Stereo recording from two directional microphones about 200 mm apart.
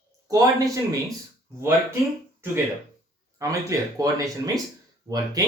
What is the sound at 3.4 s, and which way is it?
Speech, 15° right (ahead or behind).